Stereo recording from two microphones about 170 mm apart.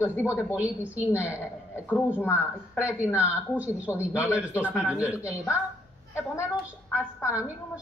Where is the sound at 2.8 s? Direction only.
10° right (ahead or behind).